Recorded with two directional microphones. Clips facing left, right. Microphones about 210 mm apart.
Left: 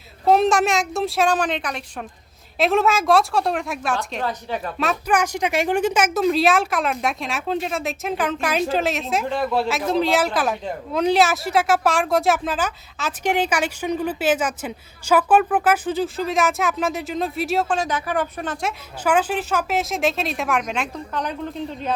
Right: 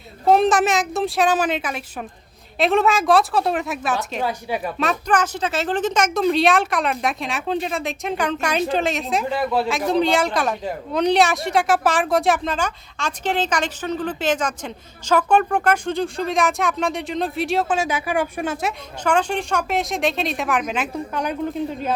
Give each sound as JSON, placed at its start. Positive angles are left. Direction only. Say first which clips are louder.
{"t": 0.3, "sound": "speech", "louder": "right 1 dB", "side_deg": 0}
{"t": 4.8, "sound": "speech", "louder": "even", "side_deg": 5}
{"t": 19.0, "sound": "speech", "louder": "even", "side_deg": 5}